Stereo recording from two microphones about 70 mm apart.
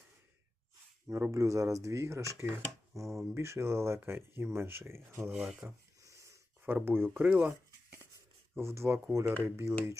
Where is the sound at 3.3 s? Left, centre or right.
Right.